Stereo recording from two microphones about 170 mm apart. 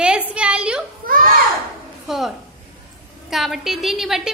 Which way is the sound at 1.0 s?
60° right (ahead or behind).